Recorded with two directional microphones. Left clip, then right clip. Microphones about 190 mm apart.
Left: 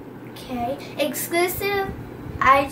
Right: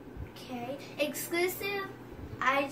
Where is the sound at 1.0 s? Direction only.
15° left (ahead or behind).